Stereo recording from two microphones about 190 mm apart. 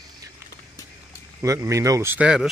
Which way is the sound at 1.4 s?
15° right (ahead or behind).